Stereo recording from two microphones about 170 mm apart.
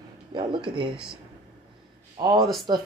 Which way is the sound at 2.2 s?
25° right (ahead or behind).